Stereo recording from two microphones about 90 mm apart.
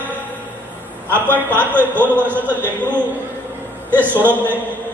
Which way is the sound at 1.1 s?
25° right (ahead or behind).